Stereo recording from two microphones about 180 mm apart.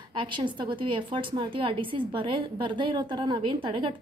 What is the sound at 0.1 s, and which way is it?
A woman's voice, 30° right (ahead or behind).